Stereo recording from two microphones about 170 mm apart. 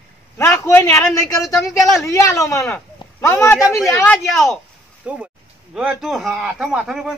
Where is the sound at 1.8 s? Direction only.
Centre (ahead or behind).